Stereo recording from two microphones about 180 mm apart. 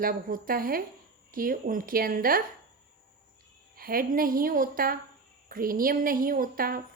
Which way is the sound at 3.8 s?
55° right (ahead or behind).